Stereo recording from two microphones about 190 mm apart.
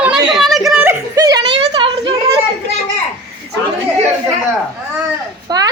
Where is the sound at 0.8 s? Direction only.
20° right (ahead or behind).